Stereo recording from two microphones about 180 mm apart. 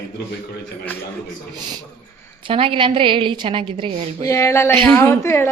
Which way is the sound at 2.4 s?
30° right (ahead or behind).